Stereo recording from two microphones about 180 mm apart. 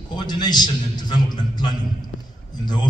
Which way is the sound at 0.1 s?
25° left (ahead or behind).